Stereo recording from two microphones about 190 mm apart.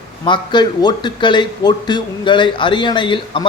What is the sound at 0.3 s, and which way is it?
A man's voice, 25° left (ahead or behind).